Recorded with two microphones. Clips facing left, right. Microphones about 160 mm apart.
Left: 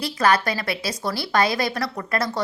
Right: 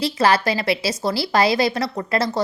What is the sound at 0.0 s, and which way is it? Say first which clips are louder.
Speech: right 2 dB; 25° right (ahead or behind).